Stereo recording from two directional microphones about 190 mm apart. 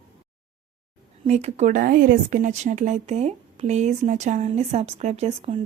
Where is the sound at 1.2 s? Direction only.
35° right (ahead or behind).